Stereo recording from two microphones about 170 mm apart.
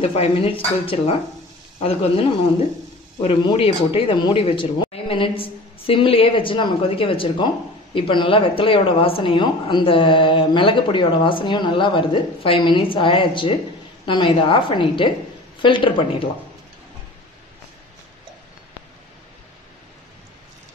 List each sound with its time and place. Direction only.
0.0 s speech: 35° left (ahead or behind)